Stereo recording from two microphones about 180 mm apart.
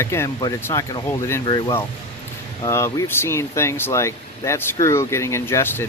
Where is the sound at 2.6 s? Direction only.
15° left (ahead or behind).